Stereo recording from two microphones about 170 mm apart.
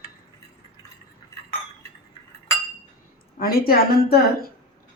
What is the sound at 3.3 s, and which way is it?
Speech, 60° left (ahead or behind).